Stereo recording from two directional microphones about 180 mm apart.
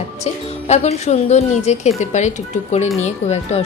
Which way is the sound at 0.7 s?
40° left (ahead or behind).